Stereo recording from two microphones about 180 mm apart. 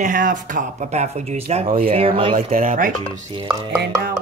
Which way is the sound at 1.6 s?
55° right (ahead or behind).